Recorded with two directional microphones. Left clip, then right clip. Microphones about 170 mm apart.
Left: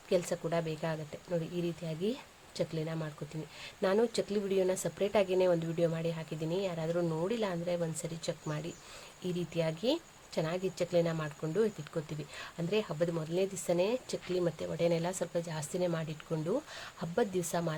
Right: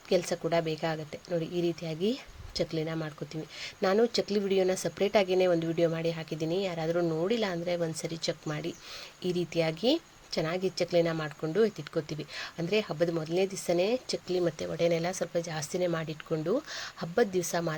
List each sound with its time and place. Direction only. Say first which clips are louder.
0.1 s speech: right 4 dB; 10° right (ahead or behind)